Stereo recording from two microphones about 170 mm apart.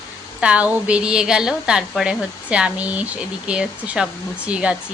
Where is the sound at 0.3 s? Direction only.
5° right (ahead or behind).